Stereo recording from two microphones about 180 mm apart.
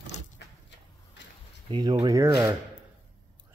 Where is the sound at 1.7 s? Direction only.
25° right (ahead or behind).